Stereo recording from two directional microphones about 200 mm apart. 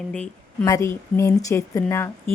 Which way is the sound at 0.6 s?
15° left (ahead or behind).